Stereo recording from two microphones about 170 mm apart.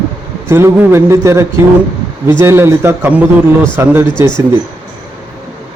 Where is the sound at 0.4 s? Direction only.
15° right (ahead or behind).